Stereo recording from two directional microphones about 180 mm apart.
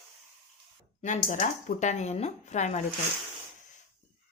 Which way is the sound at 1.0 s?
45° left (ahead or behind).